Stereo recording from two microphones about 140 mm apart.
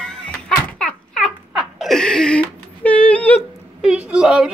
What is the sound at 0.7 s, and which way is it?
Babbling, 5° left (ahead or behind).